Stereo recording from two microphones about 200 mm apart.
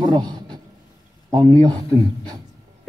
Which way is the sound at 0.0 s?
20° right (ahead or behind).